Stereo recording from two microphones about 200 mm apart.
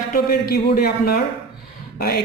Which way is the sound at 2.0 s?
50° left (ahead or behind).